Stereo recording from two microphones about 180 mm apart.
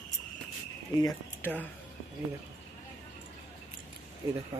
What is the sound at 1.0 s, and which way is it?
Speech, 20° left (ahead or behind).